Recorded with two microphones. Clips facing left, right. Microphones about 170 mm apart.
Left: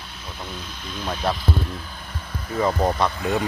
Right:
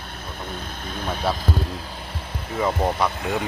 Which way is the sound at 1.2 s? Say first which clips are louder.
Even; 5° right (ahead or behind).